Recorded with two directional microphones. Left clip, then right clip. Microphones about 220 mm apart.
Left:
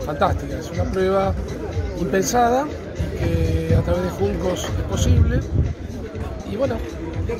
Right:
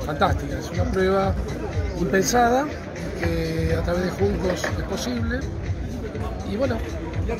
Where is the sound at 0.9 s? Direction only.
10° right (ahead or behind).